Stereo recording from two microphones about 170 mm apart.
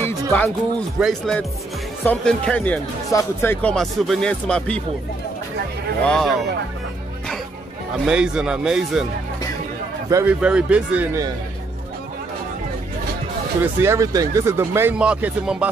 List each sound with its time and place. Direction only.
0.3 s speech: 10° left (ahead or behind)
3.1 s speech: 20° left (ahead or behind)
3.6 s speech: centre (ahead or behind)
6.0 s speech: 5° left (ahead or behind)
8.0 s speech: 5° right (ahead or behind)
10.0 s speech: 20° right (ahead or behind)
10.4 s speech: 5° right (ahead or behind)
13.6 s speech: 15° right (ahead or behind)